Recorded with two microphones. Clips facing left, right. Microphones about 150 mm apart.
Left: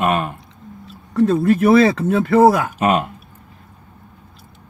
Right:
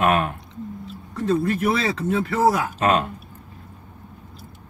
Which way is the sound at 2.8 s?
10° left (ahead or behind).